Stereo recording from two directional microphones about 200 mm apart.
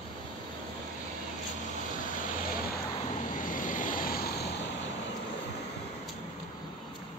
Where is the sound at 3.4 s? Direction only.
40° left (ahead or behind).